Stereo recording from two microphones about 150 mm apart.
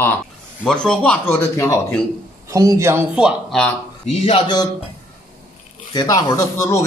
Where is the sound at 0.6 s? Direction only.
5° left (ahead or behind).